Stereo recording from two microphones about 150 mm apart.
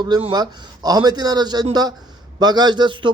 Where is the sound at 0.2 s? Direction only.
30° right (ahead or behind).